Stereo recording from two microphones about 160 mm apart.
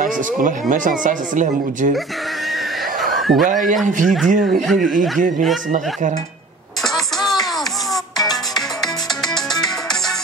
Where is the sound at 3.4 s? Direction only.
55° right (ahead or behind).